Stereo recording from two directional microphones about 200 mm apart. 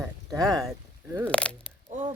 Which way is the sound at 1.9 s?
35° right (ahead or behind).